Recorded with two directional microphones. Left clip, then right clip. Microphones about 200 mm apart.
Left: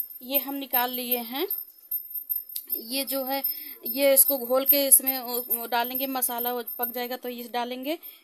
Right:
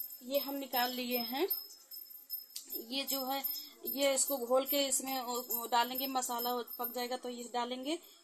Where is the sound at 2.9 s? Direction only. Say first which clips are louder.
Left 8 dB; 60° left (ahead or behind).